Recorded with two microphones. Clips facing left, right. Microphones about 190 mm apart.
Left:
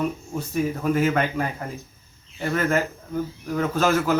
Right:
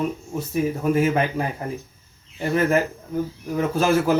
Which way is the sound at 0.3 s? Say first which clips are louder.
Right 2 dB; 5° right (ahead or behind).